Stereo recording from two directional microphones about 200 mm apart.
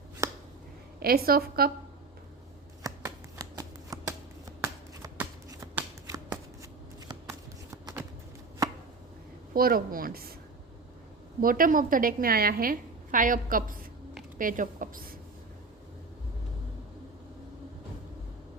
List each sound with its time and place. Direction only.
0.9 s a woman's voice: 50° right (ahead or behind)
2.8 s shuffling cards: 20° right (ahead or behind)
7.1 s a sound: 15° right (ahead or behind)
9.6 s a woman's voice: 45° right (ahead or behind)
11.3 s a woman's voice: 45° right (ahead or behind)